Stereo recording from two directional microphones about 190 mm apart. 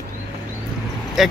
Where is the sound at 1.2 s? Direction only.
Centre (ahead or behind).